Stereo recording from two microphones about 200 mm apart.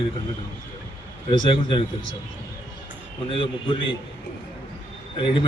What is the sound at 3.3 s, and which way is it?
Speech, 25° left (ahead or behind).